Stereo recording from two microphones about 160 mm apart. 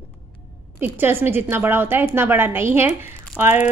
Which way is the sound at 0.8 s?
15° right (ahead or behind).